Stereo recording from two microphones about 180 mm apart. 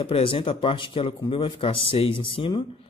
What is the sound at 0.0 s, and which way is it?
A man's voice, 30° left (ahead or behind).